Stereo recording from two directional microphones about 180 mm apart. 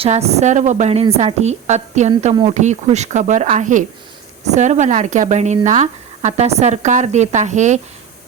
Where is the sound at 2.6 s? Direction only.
40° right (ahead or behind).